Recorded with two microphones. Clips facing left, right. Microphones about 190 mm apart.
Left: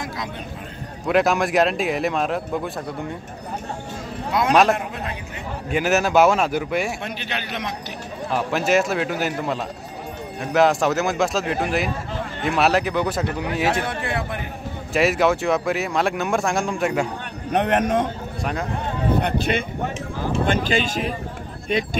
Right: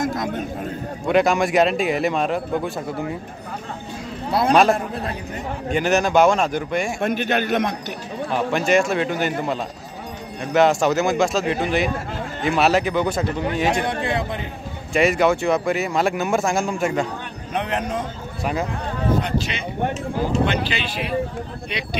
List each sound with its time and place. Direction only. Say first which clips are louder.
0.0 s chatter: right 7 dB; 50° right (ahead or behind)
1.0 s speech: right 1 dB; centre (ahead or behind)
4.3 s a man's voice: right 1 dB; 30° right (ahead or behind)
5.7 s speech: right 1 dB; 5° left (ahead or behind)
7.0 s a man's voice: right 9 dB; 50° right (ahead or behind)
8.3 s speech: right 1 dB; centre (ahead or behind)
13.8 s speech: right 3 dB; 20° right (ahead or behind)
15.0 s speech: right 1 dB; centre (ahead or behind)
17.5 s speech: left 5 dB; 50° left (ahead or behind)
18.4 s speech: right 3 dB; centre (ahead or behind)
19.1 s speech: left 2 dB; 60° left (ahead or behind)